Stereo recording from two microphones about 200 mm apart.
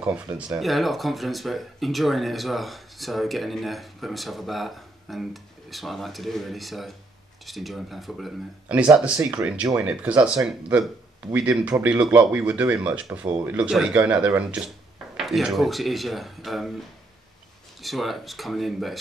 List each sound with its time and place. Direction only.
0.5 s speech: centre (ahead or behind)
17.8 s speech: centre (ahead or behind)